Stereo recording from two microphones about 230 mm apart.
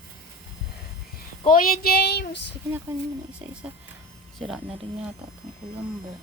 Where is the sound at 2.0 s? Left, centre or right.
Left.